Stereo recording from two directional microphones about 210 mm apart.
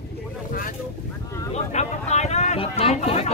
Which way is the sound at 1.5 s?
35° left (ahead or behind).